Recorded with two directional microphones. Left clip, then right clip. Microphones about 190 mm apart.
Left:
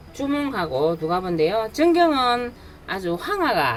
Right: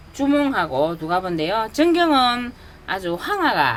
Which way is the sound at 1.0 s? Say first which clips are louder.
Even; 35° right (ahead or behind).